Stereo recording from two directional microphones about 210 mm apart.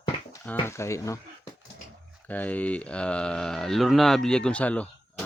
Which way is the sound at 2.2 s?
5° left (ahead or behind).